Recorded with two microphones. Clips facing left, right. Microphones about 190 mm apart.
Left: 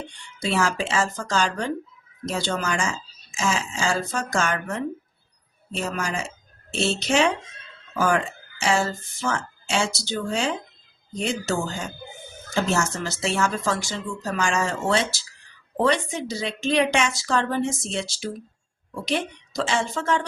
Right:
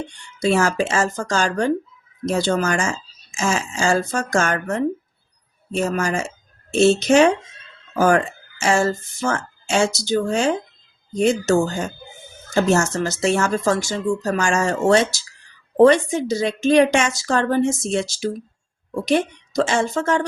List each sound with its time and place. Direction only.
0.4 s speech: 45° right (ahead or behind)